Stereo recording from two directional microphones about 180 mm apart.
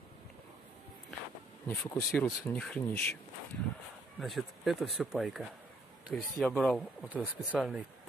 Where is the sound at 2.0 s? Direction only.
Centre (ahead or behind).